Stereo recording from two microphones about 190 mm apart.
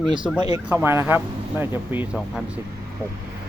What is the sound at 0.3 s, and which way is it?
Speech, 20° right (ahead or behind).